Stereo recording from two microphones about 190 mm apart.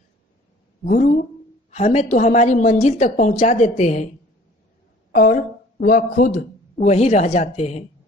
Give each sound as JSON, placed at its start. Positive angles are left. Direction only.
{"t": 0.8, "sound": "speech", "side_deg": 45}
{"t": 1.7, "sound": "a woman's voice", "side_deg": 35}
{"t": 5.1, "sound": "speech", "side_deg": 45}